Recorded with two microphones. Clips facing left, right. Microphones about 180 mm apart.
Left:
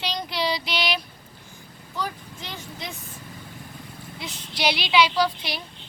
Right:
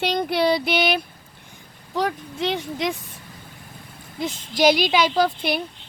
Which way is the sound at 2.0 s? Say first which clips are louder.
Right 8 dB; 70° right (ahead or behind).